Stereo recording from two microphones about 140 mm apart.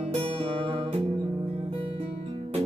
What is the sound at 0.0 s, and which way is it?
Music, 45° right (ahead or behind).